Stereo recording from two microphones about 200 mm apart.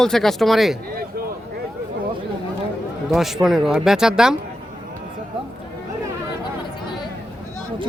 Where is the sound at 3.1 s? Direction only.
Centre (ahead or behind).